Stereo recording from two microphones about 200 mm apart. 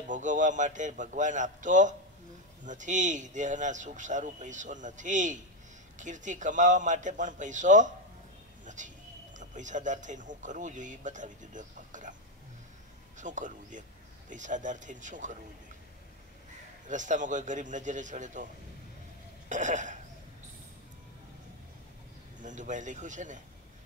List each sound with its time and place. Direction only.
0.1 s speech: 40° right (ahead or behind)
8.6 s a sound: 40° right (ahead or behind)
9.4 s speech: 40° right (ahead or behind)
13.2 s speech: 40° right (ahead or behind)
16.8 s speech: 40° right (ahead or behind)
19.5 s speech: 40° right (ahead or behind)
22.4 s speech: 40° right (ahead or behind)